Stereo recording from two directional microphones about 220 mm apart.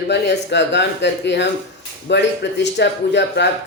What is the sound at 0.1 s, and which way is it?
Speech, 50° left (ahead or behind).